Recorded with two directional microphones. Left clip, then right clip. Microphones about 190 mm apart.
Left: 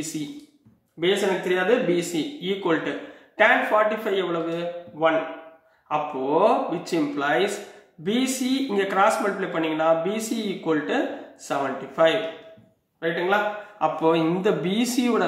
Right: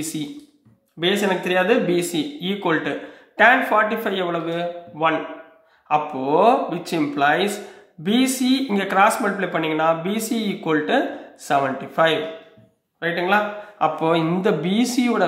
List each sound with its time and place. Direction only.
1.5 s speech: 45° right (ahead or behind); by 15.2 s 25° right (ahead or behind)